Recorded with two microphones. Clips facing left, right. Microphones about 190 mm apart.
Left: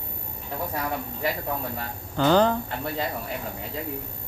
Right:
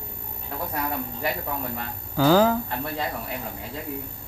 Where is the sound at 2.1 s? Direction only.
5° right (ahead or behind).